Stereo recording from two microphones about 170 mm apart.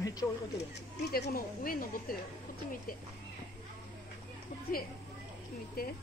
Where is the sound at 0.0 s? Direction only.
20° left (ahead or behind).